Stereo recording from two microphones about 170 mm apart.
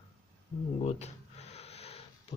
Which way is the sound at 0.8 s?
40° left (ahead or behind).